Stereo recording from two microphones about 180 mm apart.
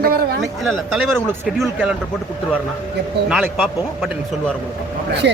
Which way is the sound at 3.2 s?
5° right (ahead or behind).